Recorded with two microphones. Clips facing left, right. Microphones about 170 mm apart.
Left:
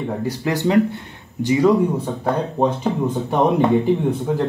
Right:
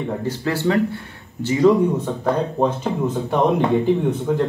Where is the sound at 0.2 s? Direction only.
15° left (ahead or behind).